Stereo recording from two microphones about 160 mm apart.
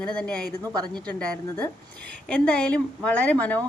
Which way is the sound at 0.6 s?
25° right (ahead or behind).